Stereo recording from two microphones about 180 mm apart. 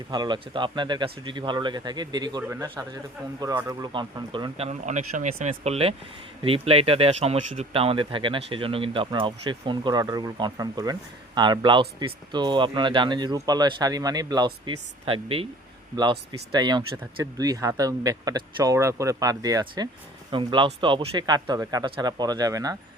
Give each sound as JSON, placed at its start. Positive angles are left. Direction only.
{"t": 0.1, "sound": "speech", "side_deg": -25}